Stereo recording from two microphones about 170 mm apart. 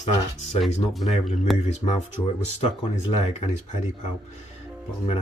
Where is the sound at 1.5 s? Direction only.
40° left (ahead or behind).